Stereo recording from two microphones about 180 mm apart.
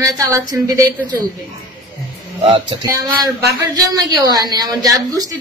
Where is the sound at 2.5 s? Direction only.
25° right (ahead or behind).